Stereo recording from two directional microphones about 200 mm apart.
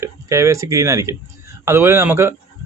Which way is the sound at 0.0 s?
15° right (ahead or behind).